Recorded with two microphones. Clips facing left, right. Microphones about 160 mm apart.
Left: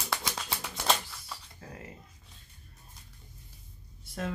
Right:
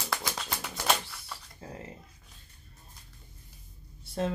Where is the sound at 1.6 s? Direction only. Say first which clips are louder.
Right 6 dB; 25° right (ahead or behind).